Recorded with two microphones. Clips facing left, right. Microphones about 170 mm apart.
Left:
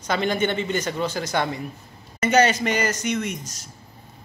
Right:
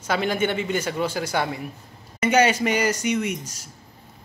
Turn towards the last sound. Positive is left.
turn(degrees=-10)  # may be behind; listen again after turning